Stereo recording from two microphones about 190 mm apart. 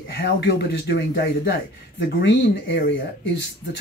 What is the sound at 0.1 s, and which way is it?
Speech, 60° left (ahead or behind).